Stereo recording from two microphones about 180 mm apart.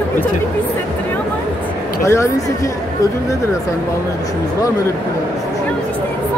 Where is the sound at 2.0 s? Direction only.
15° left (ahead or behind).